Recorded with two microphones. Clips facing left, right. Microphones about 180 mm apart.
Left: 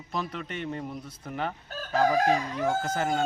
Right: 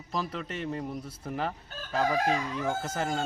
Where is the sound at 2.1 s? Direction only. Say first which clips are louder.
Left 3 dB; 40° left (ahead or behind).